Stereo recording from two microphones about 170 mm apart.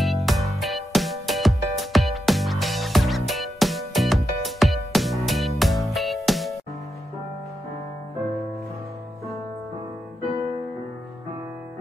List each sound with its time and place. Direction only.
0.0 s music: centre (ahead or behind)